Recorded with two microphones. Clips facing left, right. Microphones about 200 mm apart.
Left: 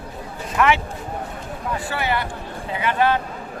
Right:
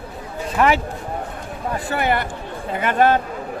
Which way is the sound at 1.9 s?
50° right (ahead or behind).